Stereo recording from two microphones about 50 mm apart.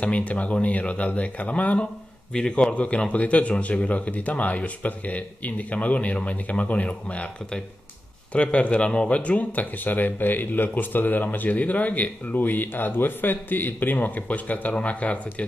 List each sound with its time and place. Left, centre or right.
0.0 s speech: left